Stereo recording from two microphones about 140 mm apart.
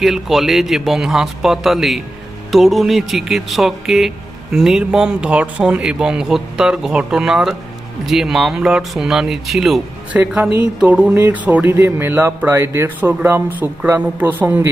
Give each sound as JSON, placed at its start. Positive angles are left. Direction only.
{"t": 0.0, "sound": "speech", "side_deg": 0}